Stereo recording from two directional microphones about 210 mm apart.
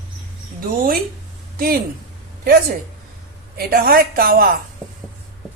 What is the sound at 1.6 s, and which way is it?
A woman's voice, 45° right (ahead or behind).